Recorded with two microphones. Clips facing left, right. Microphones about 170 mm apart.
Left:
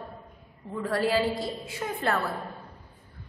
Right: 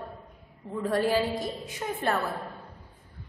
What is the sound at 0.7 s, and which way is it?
A woman's voice, 20° right (ahead or behind).